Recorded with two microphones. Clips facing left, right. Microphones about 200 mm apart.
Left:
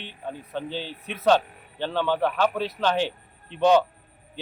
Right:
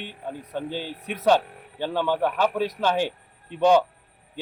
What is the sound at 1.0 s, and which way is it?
A man's voice, 10° right (ahead or behind).